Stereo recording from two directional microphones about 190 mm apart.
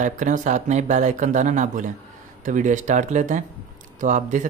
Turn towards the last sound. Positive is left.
turn(degrees=-40)  # may be behind; listen again after turning